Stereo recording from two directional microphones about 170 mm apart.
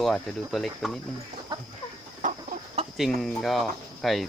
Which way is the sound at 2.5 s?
60° right (ahead or behind).